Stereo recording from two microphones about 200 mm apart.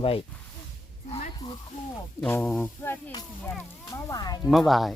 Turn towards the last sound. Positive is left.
turn(degrees=0)  # may be behind; listen again after turning